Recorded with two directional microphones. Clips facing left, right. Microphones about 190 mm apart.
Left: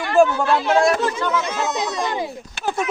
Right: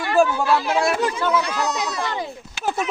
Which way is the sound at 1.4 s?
20° left (ahead or behind).